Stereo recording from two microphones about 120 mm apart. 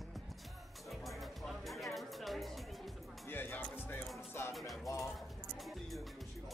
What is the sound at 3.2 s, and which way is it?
Music, 15° left (ahead or behind).